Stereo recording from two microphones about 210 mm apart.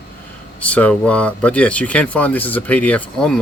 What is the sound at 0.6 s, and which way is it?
Speech, 5° left (ahead or behind).